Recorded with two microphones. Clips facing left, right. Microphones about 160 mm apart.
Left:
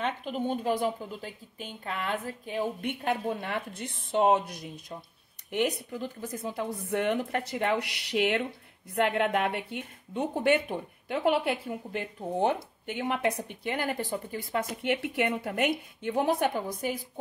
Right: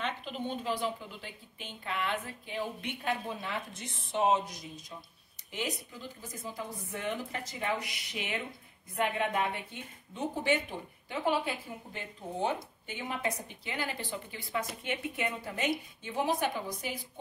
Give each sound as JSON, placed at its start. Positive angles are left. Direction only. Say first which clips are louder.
{"t": 0.0, "sound": "a woman's voice", "louder": "left 5 dB", "side_deg": 45}